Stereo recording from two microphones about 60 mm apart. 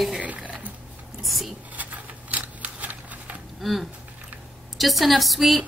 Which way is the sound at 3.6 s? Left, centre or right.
Centre.